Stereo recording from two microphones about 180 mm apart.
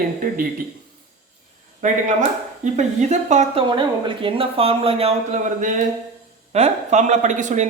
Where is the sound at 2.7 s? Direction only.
40° right (ahead or behind).